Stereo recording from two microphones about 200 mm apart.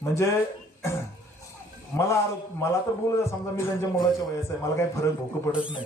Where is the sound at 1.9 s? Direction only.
15° left (ahead or behind).